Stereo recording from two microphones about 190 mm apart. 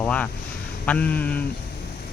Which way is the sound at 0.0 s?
5° left (ahead or behind).